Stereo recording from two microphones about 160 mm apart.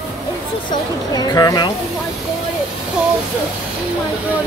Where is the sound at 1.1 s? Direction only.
25° left (ahead or behind).